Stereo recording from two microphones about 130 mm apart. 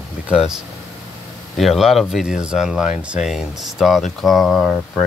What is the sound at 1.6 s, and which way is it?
Speech, centre (ahead or behind).